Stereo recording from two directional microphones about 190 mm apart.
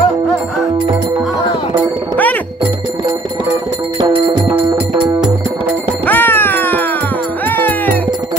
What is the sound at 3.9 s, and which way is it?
Music, 25° right (ahead or behind).